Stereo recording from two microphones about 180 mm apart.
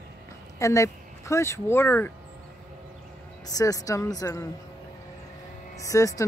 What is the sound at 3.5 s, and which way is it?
A woman's voice, 20° left (ahead or behind).